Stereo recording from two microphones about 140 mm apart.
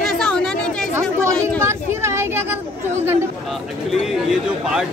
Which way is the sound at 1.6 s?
20° right (ahead or behind).